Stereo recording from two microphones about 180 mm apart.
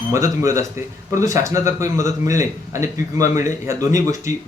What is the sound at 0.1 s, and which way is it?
Speech, 15° right (ahead or behind).